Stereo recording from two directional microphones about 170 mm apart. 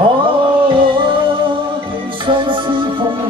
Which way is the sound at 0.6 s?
30° right (ahead or behind).